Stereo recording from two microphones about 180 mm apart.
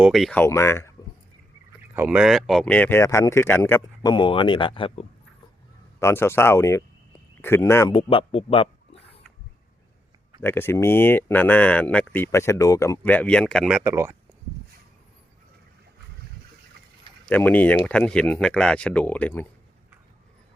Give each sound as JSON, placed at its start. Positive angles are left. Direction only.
{"t": 0.0, "sound": "speech", "side_deg": 0}
{"t": 2.0, "sound": "speech", "side_deg": -5}
{"t": 6.0, "sound": "speech", "side_deg": 15}
{"t": 8.1, "sound": "a sound", "side_deg": 35}
{"t": 10.4, "sound": "speech", "side_deg": 10}
{"t": 13.8, "sound": "speech", "side_deg": -15}
{"t": 17.2, "sound": "speech", "side_deg": 10}